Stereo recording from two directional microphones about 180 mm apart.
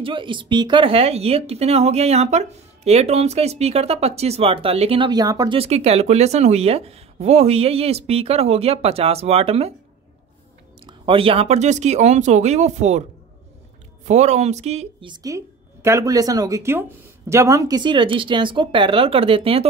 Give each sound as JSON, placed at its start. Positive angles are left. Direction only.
{"t": 0.0, "sound": "speech", "side_deg": -25}
{"t": 5.6, "sound": "speech", "side_deg": -35}
{"t": 10.9, "sound": "speech", "side_deg": -30}
{"t": 14.0, "sound": "speech", "side_deg": -40}